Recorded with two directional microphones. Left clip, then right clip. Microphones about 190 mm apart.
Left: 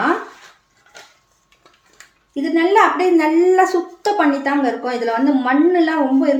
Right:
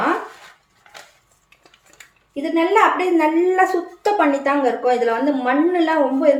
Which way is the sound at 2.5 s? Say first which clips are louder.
Left 2 dB; 25° left (ahead or behind).